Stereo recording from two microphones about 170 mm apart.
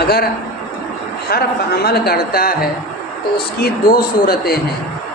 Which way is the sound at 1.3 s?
65° left (ahead or behind).